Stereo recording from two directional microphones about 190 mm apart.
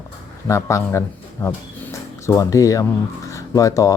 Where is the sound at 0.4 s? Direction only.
15° left (ahead or behind).